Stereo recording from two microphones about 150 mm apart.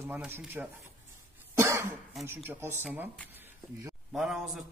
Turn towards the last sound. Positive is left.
turn(degrees=0)  # may be behind; listen again after turning